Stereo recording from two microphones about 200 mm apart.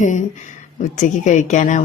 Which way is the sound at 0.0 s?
35° left (ahead or behind).